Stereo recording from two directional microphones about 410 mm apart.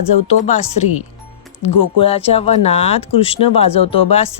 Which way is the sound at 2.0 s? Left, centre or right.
Centre.